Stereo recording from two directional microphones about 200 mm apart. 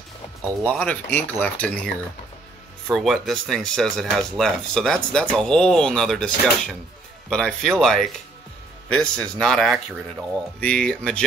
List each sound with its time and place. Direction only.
0.7 s speech: 5° left (ahead or behind)
2.9 s speech: centre (ahead or behind)